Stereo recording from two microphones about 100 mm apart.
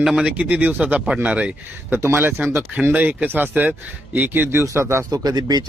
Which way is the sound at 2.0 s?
25° right (ahead or behind).